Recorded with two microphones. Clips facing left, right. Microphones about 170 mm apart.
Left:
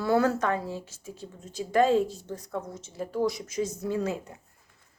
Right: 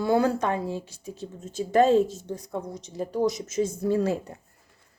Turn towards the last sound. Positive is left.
turn(degrees=-35)  # may be behind; listen again after turning